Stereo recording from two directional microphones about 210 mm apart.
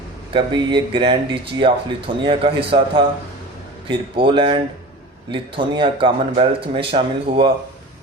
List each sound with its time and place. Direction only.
0.3 s speech: 20° right (ahead or behind)